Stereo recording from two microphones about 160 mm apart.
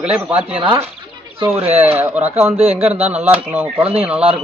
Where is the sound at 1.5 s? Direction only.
35° right (ahead or behind).